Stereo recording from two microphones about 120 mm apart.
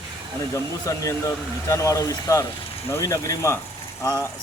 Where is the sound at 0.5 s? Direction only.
25° left (ahead or behind).